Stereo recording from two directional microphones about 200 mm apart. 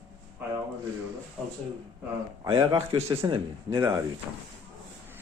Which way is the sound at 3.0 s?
15° right (ahead or behind).